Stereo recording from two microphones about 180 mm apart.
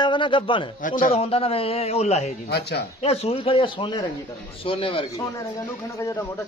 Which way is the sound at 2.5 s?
65° left (ahead or behind).